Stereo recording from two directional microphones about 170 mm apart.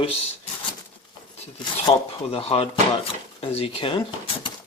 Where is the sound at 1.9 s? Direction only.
35° left (ahead or behind).